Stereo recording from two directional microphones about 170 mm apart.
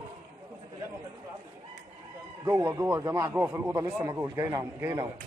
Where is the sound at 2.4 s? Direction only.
20° right (ahead or behind).